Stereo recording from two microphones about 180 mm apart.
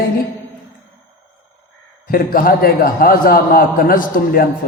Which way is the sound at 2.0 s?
55° left (ahead or behind).